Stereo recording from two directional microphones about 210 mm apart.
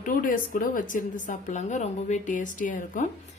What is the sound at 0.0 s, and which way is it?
A woman's voice, 40° left (ahead or behind).